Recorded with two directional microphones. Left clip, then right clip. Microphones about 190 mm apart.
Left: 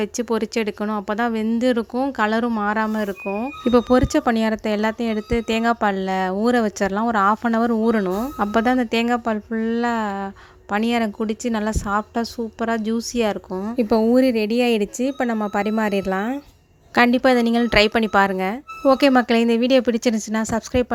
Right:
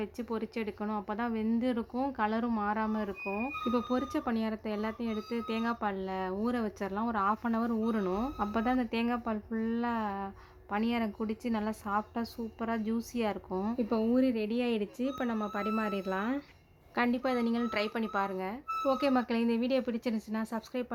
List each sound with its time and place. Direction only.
0.0 s speech: 40° left (ahead or behind)
3.7 s speech: 40° left (ahead or behind); by 8.3 s 25° left (ahead or behind)
8.4 s speech: 35° left (ahead or behind)
13.5 s speech: 15° left (ahead or behind)
14.1 s speech: 40° left (ahead or behind)